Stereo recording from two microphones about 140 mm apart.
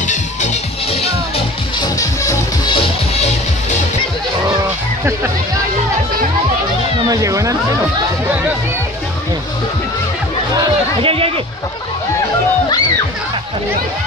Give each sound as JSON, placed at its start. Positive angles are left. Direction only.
{"t": 0.0, "sound": "music", "side_deg": 60}
{"t": 1.8, "sound": "music", "side_deg": 25}
{"t": 7.1, "sound": "speech", "side_deg": -20}
{"t": 11.0, "sound": "speech", "side_deg": -40}